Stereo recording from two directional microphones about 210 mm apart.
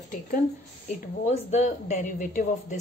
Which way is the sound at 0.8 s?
35° left (ahead or behind).